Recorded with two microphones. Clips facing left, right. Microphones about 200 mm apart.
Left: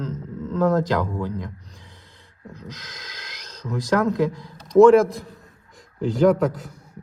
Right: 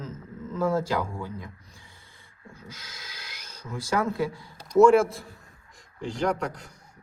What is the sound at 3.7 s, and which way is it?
A man's voice, 5° right (ahead or behind).